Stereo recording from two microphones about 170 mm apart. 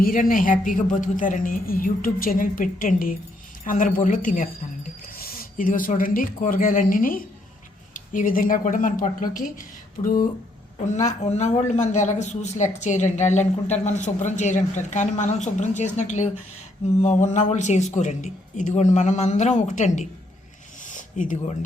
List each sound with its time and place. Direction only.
0.0 s speech: 55° left (ahead or behind)
5.0 s speech: 60° left (ahead or behind)
10.8 s speech: 45° left (ahead or behind)
20.8 s a sound: 50° left (ahead or behind)